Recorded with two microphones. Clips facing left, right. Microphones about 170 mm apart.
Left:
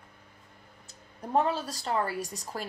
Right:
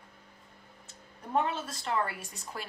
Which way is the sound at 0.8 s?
35° left (ahead or behind).